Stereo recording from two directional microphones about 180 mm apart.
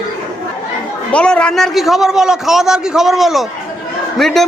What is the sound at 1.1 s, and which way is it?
A man's voice, 5° left (ahead or behind).